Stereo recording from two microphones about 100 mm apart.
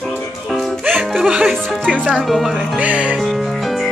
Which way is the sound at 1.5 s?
5° left (ahead or behind).